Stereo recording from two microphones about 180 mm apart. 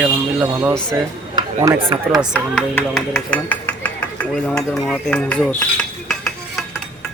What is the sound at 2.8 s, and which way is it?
Speech, 5° left (ahead or behind).